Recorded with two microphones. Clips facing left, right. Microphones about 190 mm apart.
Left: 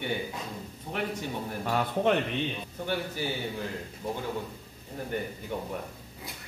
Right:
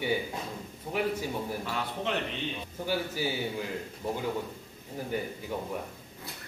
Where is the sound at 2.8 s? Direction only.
10° right (ahead or behind).